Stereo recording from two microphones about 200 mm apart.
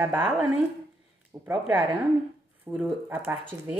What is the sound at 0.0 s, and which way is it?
A woman's voice, 10° right (ahead or behind).